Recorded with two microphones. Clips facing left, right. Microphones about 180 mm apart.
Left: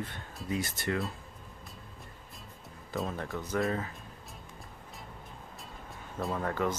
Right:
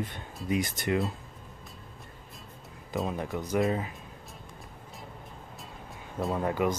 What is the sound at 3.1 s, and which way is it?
Speech, 15° right (ahead or behind).